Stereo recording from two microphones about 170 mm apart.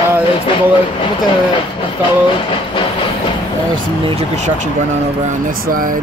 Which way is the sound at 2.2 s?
30° left (ahead or behind).